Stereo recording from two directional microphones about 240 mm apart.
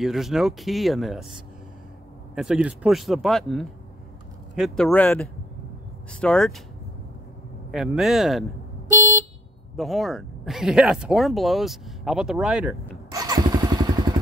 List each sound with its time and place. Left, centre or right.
0.0 s speech: centre
7.7 s speech: centre
9.8 s speech: centre
13.1 s motorcycle: centre